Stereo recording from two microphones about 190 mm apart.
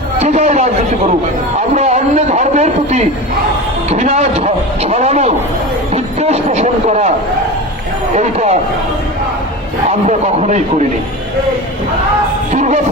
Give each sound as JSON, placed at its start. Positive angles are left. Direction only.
{"t": 0.2, "sound": "a man's voice", "side_deg": -35}
{"t": 1.7, "sound": "speech", "side_deg": -35}
{"t": 8.1, "sound": "speech", "side_deg": -35}
{"t": 10.1, "sound": "speech", "side_deg": -40}
{"t": 12.5, "sound": "speech", "side_deg": -40}